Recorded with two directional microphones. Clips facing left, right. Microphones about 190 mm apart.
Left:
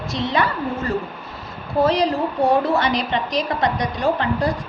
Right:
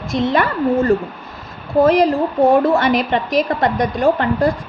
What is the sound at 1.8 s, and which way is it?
A woman's voice, 50° right (ahead or behind).